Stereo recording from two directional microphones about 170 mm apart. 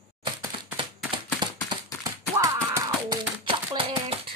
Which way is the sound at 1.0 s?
25° right (ahead or behind).